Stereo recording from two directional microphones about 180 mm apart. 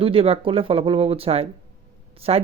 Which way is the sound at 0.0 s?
30° right (ahead or behind).